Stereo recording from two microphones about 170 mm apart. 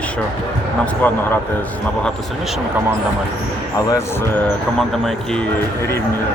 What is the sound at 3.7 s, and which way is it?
Speech, 15° left (ahead or behind).